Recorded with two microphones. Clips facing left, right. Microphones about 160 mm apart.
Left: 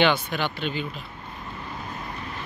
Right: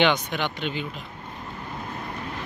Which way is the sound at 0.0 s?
20° right (ahead or behind).